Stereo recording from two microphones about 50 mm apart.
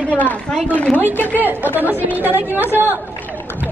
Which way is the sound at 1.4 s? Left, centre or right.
Right.